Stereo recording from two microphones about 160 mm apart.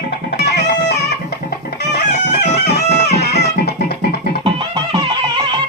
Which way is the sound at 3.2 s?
90° left.